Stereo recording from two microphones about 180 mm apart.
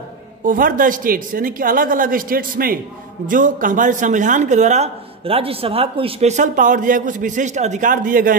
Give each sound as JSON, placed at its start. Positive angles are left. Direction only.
{"t": 0.4, "sound": "speech", "side_deg": -50}